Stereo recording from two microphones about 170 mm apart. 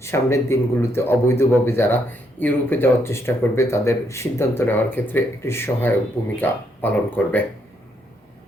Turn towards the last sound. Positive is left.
turn(degrees=10)  # may be behind; listen again after turning